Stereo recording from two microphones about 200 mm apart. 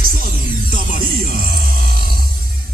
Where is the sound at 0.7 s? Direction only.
45° right (ahead or behind).